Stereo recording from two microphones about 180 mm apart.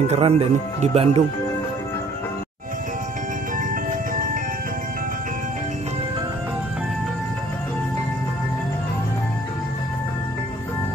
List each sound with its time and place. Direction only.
0.0 s speech: 35° right (ahead or behind)